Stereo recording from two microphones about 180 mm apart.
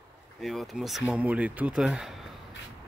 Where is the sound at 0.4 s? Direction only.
Centre (ahead or behind).